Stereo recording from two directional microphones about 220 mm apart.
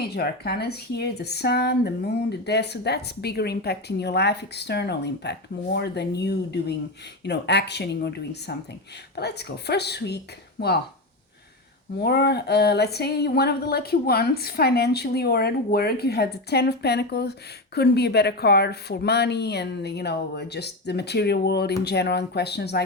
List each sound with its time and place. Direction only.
0.0 s speech: 45° left (ahead or behind)
11.9 s speech: 50° left (ahead or behind)